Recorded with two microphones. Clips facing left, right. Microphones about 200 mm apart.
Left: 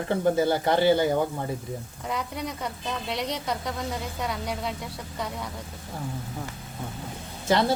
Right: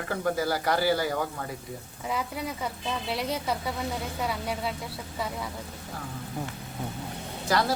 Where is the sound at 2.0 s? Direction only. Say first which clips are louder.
Even; 5° right (ahead or behind).